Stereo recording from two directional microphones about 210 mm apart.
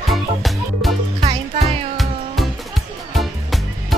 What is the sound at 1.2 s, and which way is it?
Music, 30° right (ahead or behind).